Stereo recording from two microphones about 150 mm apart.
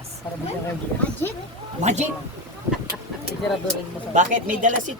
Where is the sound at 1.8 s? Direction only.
50° right (ahead or behind).